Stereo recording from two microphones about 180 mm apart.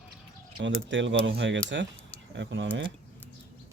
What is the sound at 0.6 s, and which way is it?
Speech, 90° right.